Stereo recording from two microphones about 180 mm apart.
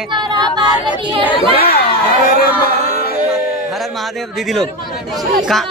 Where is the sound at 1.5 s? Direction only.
60° left (ahead or behind).